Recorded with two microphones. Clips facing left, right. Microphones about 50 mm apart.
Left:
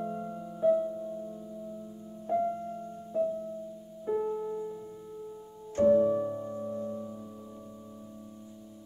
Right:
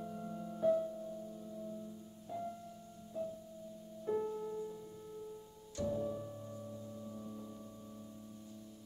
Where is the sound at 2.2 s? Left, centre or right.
Left.